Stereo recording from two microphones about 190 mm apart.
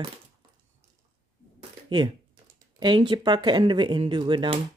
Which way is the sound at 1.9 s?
25° right (ahead or behind).